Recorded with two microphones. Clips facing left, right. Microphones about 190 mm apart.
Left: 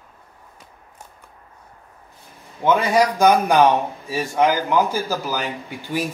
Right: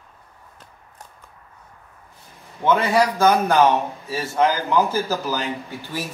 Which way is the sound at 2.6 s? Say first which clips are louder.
Left 1 dB; 15° left (ahead or behind).